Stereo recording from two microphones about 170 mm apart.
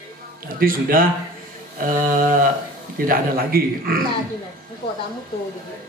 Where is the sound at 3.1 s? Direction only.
60° right (ahead or behind).